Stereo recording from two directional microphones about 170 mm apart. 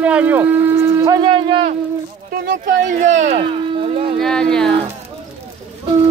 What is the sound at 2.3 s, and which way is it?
Speech, 60° right (ahead or behind).